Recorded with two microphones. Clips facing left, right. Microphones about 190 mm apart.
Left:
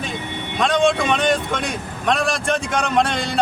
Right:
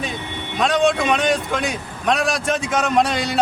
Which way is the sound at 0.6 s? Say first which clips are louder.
Even; centre (ahead or behind).